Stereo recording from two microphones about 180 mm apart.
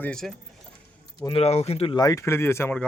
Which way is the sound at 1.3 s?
35° left (ahead or behind).